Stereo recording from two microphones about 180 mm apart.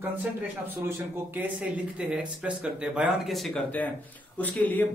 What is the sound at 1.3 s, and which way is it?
Speech, 10° right (ahead or behind).